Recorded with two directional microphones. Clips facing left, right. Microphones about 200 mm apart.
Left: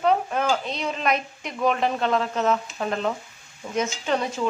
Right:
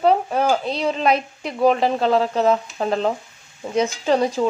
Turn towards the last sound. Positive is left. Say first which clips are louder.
# right 6 dB
turn(degrees=-35)  # may be behind; listen again after turning